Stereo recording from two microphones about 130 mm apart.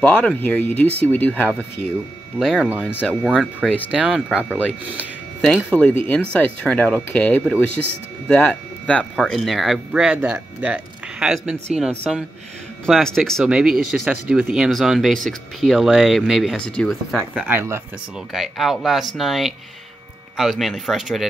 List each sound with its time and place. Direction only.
0.0 s speech: 10° left (ahead or behind)
2.3 s speech: centre (ahead or behind)
2.7 s speech: 15° right (ahead or behind)
3.1 s speech: 10° left (ahead or behind)
3.9 s speech: 5° right (ahead or behind)
5.4 s speech: 5° left (ahead or behind)
17.3 s speech: 10° right (ahead or behind)
18.3 s speech: centre (ahead or behind)